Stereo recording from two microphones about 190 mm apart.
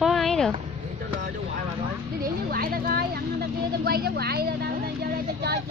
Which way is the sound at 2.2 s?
50° right (ahead or behind).